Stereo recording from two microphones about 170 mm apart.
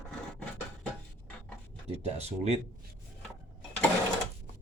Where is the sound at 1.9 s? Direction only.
40° right (ahead or behind).